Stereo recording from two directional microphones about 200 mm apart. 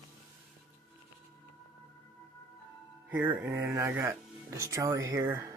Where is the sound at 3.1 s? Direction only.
10° right (ahead or behind).